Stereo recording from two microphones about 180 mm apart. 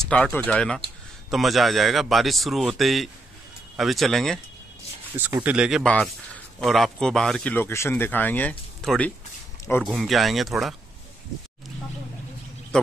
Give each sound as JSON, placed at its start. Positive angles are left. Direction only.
{"t": 0.1, "sound": "speech", "side_deg": 10}
{"t": 5.1, "sound": "speech", "side_deg": -10}